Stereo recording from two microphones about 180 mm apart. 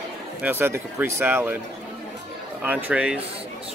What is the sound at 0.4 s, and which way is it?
Speech, 10° right (ahead or behind).